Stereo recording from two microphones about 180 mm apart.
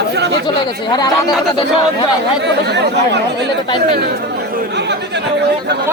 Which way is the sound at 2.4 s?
70° right (ahead or behind).